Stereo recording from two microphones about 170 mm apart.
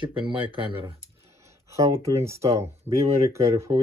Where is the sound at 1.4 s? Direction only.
15° right (ahead or behind).